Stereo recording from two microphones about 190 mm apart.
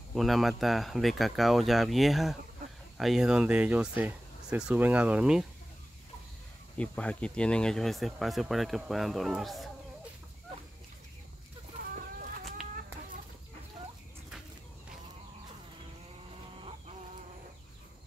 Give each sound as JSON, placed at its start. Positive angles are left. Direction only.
{"t": 0.1, "sound": "speech", "side_deg": 0}
{"t": 6.8, "sound": "speech", "side_deg": 5}
{"t": 11.8, "sound": "chicken", "side_deg": -50}